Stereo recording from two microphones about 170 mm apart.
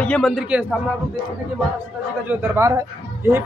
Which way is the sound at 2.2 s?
15° right (ahead or behind).